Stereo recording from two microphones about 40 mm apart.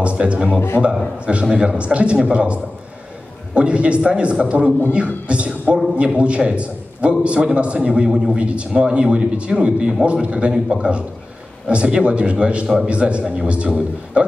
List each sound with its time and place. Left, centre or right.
0.0 s a man's voice: right
0.6 s a man's voice: left
1.2 s a man's voice: right